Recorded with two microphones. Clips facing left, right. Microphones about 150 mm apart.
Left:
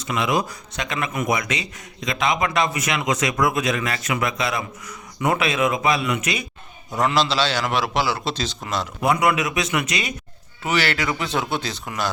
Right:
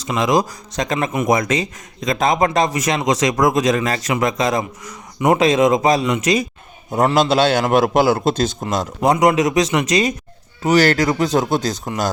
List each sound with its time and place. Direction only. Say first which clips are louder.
0.2 s a man's voice: right 6 dB; 40° right (ahead or behind)
9.0 s a man's voice: right 6 dB; 40° right (ahead or behind)